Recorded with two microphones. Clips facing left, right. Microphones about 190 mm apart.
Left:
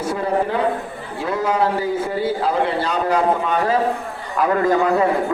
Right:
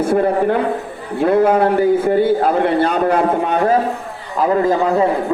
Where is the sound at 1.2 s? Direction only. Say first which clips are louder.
Right 7 dB; 55° right (ahead or behind).